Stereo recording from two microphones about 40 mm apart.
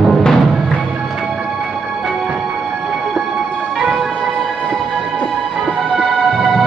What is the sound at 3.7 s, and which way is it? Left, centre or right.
Music, centre.